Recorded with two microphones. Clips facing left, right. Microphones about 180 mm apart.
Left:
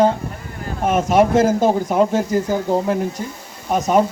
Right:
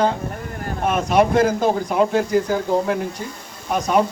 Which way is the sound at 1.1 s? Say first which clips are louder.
Left 2 dB; 45° left (ahead or behind).